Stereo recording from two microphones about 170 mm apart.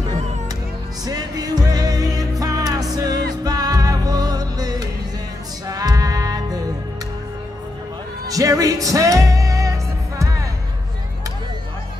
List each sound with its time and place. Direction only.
1.0 s music: 25° right (ahead or behind)
8.3 s music: 20° right (ahead or behind)